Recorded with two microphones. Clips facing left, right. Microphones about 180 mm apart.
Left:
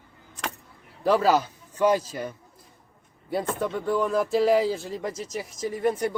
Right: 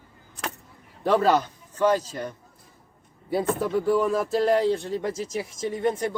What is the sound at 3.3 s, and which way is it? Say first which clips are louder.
Speech: right 3 dB; 5° right (ahead or behind).